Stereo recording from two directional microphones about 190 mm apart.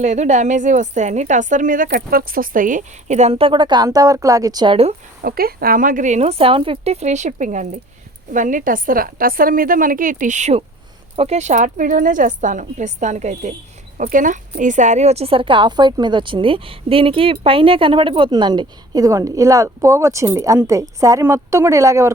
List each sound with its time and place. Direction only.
0.0 s a woman's voice: 35° right (ahead or behind)
5.2 s a woman's voice: 50° right (ahead or behind); by 22.1 s 15° right (ahead or behind)